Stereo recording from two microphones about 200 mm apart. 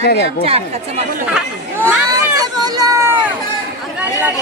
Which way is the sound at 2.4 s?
20° right (ahead or behind).